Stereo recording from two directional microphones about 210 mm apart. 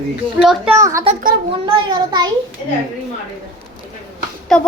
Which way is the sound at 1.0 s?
35° right (ahead or behind).